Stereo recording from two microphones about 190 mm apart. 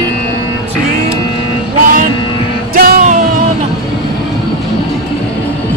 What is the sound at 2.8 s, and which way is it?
Music, 50° right (ahead or behind).